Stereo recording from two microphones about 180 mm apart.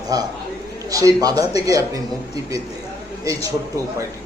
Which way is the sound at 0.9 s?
20° right (ahead or behind).